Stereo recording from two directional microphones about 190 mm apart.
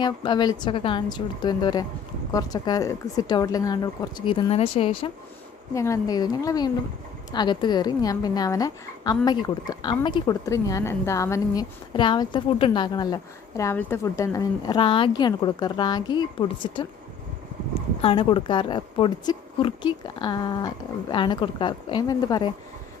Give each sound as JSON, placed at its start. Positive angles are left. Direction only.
{"t": 0.0, "sound": "a woman's voice", "side_deg": 25}
{"t": 5.7, "sound": "a woman's voice", "side_deg": 15}
{"t": 18.0, "sound": "a woman's voice", "side_deg": 25}